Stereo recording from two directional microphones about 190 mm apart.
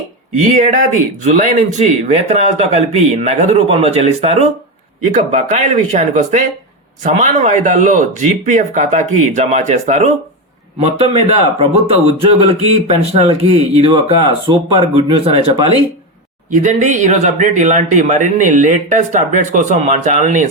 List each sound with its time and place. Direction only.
0.3 s speech: 35° right (ahead or behind)